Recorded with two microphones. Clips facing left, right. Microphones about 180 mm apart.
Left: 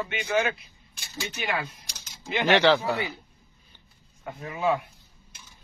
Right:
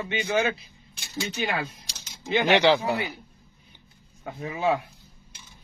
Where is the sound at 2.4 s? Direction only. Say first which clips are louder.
Even; 15° right (ahead or behind).